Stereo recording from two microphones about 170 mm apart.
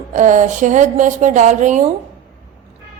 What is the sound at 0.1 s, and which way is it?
A woman's voice, 50° right (ahead or behind).